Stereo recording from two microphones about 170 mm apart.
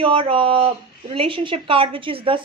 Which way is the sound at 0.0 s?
30° right (ahead or behind).